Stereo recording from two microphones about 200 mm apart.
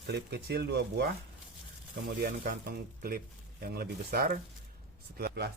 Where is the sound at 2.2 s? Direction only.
45° right (ahead or behind).